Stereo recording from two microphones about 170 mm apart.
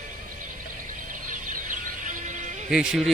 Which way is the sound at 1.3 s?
50° right (ahead or behind).